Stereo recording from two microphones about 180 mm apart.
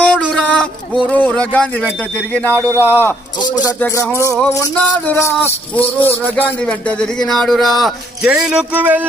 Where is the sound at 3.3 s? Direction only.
25° left (ahead or behind).